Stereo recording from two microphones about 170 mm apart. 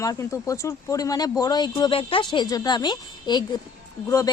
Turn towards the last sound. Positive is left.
turn(degrees=20)  # may be behind; listen again after turning